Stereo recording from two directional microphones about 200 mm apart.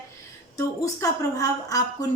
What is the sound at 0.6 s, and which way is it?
A woman's voice, 15° left (ahead or behind).